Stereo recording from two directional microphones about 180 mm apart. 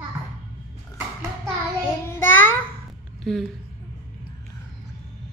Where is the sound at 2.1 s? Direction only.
10° left (ahead or behind).